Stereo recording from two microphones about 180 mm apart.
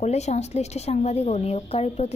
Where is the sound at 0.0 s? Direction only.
35° left (ahead or behind).